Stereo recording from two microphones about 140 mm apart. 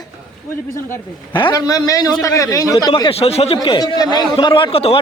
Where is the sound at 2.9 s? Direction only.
40° left (ahead or behind).